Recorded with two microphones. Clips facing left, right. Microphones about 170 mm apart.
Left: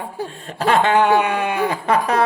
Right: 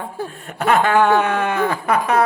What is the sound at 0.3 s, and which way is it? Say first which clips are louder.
Speech: right 1 dB; 25° left (ahead or behind).